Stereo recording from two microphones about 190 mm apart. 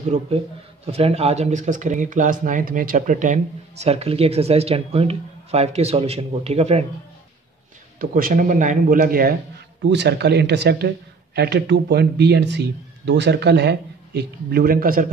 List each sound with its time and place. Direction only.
0.1 s speech: 35° right (ahead or behind)
8.0 s speech: 50° right (ahead or behind)